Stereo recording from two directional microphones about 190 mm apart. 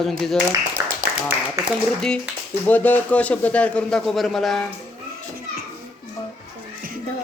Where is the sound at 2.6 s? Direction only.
10° left (ahead or behind).